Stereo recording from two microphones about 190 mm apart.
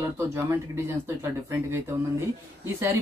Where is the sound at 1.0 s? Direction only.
15° right (ahead or behind).